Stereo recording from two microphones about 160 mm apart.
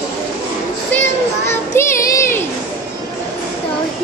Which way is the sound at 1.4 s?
15° left (ahead or behind).